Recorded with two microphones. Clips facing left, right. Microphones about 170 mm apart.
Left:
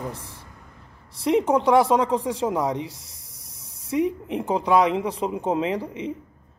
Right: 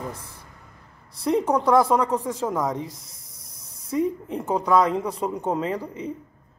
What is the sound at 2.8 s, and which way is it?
Speech, 80° left.